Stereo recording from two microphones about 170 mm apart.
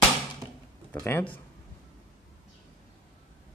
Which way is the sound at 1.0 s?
10° left (ahead or behind).